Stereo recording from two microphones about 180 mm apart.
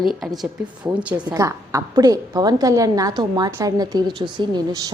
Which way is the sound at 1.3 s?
20° right (ahead or behind).